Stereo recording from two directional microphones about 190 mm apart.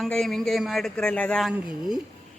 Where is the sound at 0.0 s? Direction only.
Centre (ahead or behind).